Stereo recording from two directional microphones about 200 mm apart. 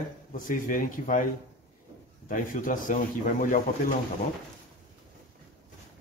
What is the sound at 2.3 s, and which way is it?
A man's voice, 40° left (ahead or behind).